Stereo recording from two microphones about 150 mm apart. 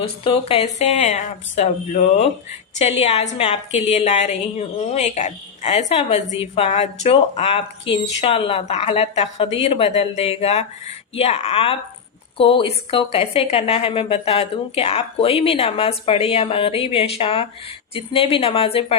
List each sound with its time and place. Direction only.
0.0 s a woman's voice: 40° left (ahead or behind)